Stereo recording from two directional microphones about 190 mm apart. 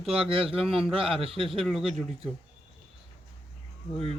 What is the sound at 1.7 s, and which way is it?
Speech, centre (ahead or behind).